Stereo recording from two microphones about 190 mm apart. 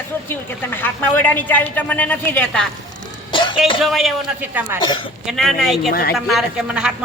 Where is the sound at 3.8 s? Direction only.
Centre (ahead or behind).